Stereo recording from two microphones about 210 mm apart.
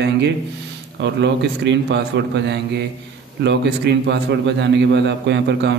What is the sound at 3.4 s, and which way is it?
A man's voice, 55° right (ahead or behind).